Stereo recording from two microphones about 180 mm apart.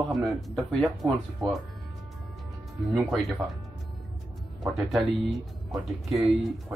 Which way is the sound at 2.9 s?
Centre (ahead or behind).